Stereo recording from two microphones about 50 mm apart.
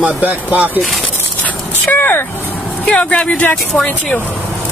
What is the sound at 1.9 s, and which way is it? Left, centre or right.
Vehicle, left.